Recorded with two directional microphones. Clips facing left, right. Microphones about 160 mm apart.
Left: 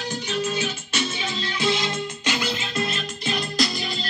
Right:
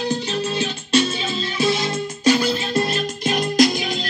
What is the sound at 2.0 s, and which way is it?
Music, 40° right (ahead or behind).